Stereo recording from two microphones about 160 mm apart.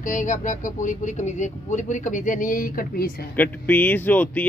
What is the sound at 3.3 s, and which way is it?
Speech, 10° left (ahead or behind).